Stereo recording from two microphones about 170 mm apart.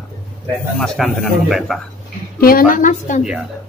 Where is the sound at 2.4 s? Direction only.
60° left (ahead or behind).